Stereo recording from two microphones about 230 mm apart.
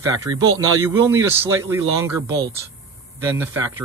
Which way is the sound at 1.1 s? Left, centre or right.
Centre.